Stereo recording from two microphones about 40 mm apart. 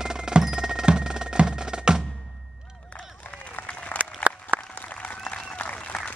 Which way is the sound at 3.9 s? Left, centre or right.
Left.